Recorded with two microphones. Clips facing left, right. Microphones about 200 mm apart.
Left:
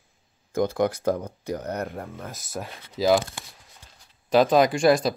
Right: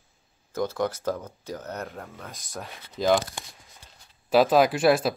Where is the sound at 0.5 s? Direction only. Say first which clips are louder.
Left 4 dB; 15° left (ahead or behind).